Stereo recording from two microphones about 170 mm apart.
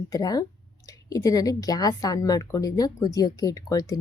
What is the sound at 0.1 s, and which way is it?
A woman's voice, 20° left (ahead or behind).